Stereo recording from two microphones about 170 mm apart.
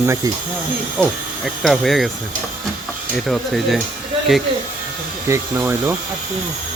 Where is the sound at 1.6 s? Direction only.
Centre (ahead or behind).